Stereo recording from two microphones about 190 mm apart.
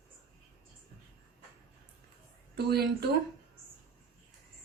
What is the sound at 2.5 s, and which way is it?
Speech, 60° right (ahead or behind).